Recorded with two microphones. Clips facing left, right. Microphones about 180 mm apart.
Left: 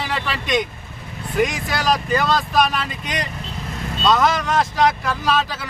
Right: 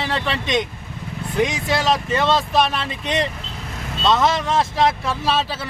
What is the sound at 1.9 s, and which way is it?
Speech, 25° right (ahead or behind).